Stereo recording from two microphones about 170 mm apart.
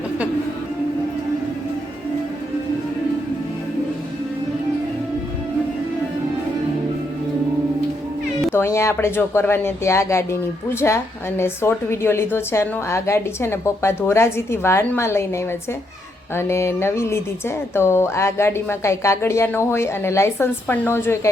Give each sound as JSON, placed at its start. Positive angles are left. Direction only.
{"t": 8.5, "sound": "speech", "side_deg": 15}